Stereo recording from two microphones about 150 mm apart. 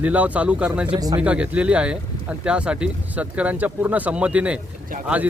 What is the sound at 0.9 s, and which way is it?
Speech, 25° right (ahead or behind).